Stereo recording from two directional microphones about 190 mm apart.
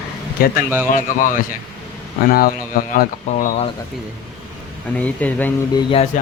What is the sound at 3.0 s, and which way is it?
Speech, 40° left (ahead or behind).